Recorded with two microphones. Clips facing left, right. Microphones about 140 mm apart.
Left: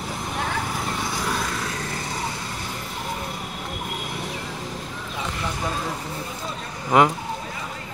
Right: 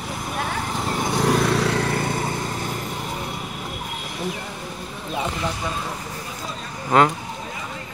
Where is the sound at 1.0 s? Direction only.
55° right (ahead or behind).